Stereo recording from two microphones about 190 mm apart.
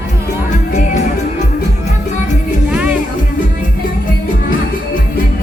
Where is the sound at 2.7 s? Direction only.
5° right (ahead or behind).